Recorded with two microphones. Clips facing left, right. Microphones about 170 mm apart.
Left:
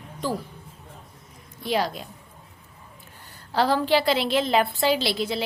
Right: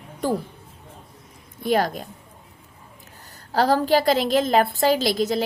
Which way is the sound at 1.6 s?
50° right (ahead or behind).